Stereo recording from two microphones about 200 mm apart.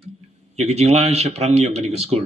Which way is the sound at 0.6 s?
30° right (ahead or behind).